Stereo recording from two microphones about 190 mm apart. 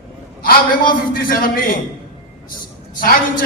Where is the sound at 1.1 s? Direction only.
50° left (ahead or behind).